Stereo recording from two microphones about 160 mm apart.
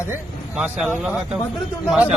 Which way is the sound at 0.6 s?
5° right (ahead or behind).